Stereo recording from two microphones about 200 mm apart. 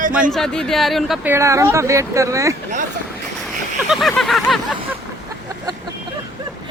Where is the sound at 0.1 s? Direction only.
Centre (ahead or behind).